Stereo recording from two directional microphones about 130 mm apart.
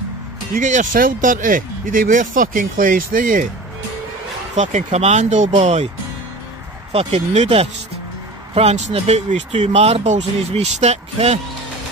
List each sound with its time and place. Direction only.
0.5 s speech: 75° right (ahead or behind); by 3.4 s 90° right
4.6 s speech: 70° right (ahead or behind)
6.9 s speech: 50° right (ahead or behind)